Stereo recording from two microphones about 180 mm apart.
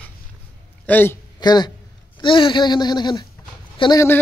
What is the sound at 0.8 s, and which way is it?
Speech, 10° left (ahead or behind).